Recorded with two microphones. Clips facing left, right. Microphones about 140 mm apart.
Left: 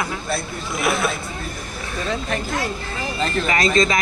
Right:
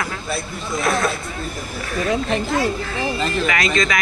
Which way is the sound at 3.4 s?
30° left (ahead or behind).